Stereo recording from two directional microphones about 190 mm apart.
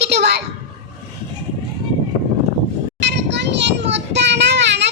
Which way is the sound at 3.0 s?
65° right (ahead or behind).